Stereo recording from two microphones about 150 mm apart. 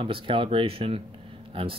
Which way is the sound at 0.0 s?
35° right (ahead or behind).